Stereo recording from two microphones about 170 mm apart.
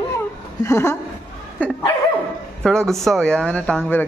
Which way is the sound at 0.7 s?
15° left (ahead or behind).